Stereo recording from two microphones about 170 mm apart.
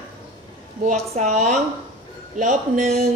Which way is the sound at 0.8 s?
45° right (ahead or behind).